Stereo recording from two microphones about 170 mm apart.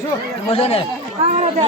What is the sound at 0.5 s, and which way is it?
Speech, 35° left (ahead or behind).